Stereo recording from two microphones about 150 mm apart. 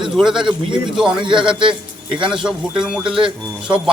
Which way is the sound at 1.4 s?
35° right (ahead or behind).